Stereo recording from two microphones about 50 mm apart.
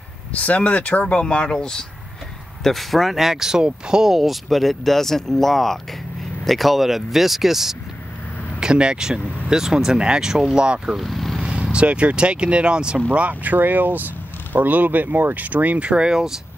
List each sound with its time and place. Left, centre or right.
0.3 s speech: left; by 1.9 s centre
2.6 s speech: centre
8.5 s speech: centre
10.3 s speech: centre
10.6 s speech: centre
11.0 s vehicle: centre
11.7 s speech: right